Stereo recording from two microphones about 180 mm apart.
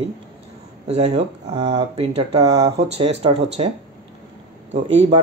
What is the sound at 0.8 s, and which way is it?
Speech, 35° right (ahead or behind).